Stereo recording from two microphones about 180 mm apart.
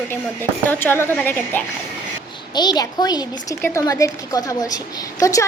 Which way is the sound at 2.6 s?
25° left (ahead or behind).